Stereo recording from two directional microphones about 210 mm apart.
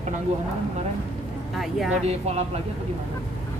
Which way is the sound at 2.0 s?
30° right (ahead or behind).